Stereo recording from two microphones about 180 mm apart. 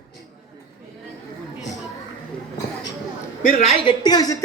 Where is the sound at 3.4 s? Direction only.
40° left (ahead or behind).